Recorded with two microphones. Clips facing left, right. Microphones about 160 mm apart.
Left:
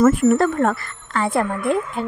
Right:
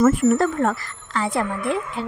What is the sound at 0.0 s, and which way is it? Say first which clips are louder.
A woman's voice: left 2 dB; 60° left (ahead or behind).